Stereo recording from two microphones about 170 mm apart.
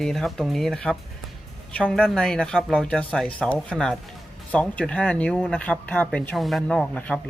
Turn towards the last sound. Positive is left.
turn(degrees=5)  # may be behind; listen again after turning